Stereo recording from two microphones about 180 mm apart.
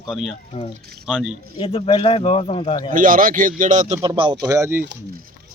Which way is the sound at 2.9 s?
50° right (ahead or behind).